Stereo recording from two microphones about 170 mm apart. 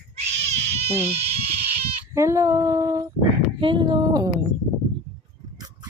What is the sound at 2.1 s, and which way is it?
Female singing, 15° right (ahead or behind).